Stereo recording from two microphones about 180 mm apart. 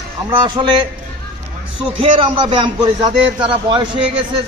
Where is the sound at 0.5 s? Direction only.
25° right (ahead or behind).